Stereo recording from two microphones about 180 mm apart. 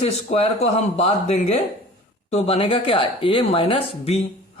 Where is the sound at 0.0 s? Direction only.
35° left (ahead or behind).